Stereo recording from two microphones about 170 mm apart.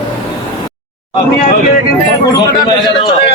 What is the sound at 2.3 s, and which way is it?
A man's voice, 25° left (ahead or behind).